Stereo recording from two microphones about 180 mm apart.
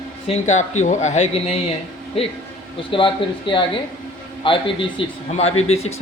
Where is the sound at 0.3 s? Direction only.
40° left (ahead or behind).